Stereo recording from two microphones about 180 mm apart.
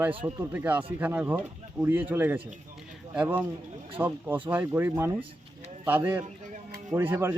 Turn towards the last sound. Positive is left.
turn(degrees=-10)  # may be behind; listen again after turning